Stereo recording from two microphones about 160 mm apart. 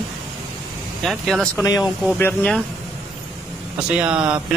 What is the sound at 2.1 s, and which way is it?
Speech, 10° left (ahead or behind).